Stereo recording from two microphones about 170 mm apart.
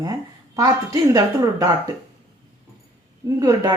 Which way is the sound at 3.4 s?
25° right (ahead or behind).